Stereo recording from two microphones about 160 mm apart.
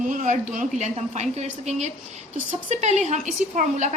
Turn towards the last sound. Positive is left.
turn(degrees=-50)  # may be behind; listen again after turning